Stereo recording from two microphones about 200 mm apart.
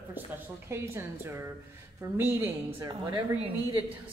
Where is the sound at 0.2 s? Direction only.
10° right (ahead or behind).